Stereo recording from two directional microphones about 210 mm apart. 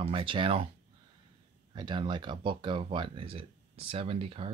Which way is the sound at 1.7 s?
20° right (ahead or behind).